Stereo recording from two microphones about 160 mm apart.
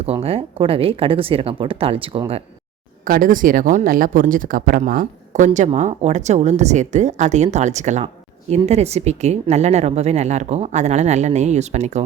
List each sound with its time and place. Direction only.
0.0 s speech: 40° right (ahead or behind)
3.0 s speech: 60° right (ahead or behind)
5.5 s speech: 45° right (ahead or behind)